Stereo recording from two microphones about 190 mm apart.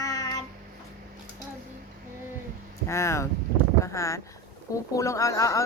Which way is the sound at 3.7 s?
15° left (ahead or behind).